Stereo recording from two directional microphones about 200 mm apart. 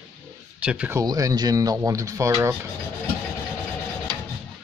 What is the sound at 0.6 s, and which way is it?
Speech, 5° right (ahead or behind).